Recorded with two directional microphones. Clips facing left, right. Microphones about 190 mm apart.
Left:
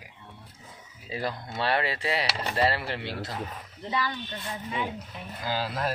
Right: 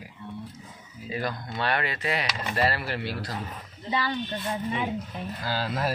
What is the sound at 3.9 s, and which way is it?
Speech, 30° right (ahead or behind).